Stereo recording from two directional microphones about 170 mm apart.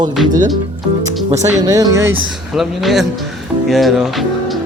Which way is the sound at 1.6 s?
20° right (ahead or behind).